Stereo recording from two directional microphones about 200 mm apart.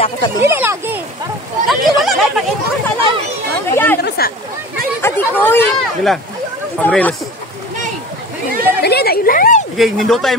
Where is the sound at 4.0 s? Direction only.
50° left (ahead or behind).